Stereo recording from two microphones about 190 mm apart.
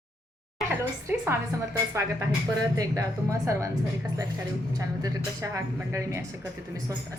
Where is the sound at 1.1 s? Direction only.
10° right (ahead or behind).